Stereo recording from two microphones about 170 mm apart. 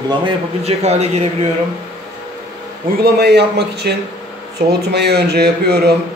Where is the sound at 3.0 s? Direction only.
75° right (ahead or behind).